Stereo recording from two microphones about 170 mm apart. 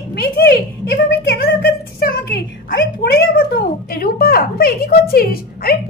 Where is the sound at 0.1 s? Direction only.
65° left (ahead or behind).